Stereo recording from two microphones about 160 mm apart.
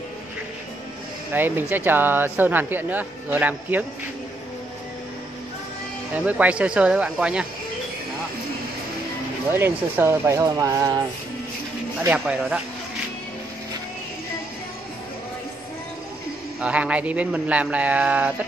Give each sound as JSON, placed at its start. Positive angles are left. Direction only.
{"t": 1.3, "sound": "speech", "side_deg": -10}
{"t": 6.1, "sound": "speech", "side_deg": -10}
{"t": 9.5, "sound": "speech", "side_deg": -15}
{"t": 12.0, "sound": "speech", "side_deg": -10}
{"t": 16.6, "sound": "speech", "side_deg": -10}